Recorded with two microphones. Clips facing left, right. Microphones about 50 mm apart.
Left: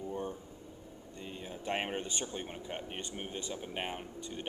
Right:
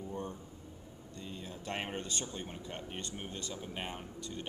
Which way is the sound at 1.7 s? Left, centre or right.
Left.